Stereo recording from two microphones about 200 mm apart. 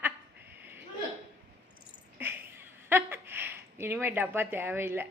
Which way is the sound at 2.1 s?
10° right (ahead or behind).